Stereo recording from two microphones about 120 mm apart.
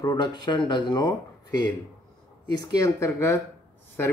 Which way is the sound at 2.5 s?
30° left (ahead or behind).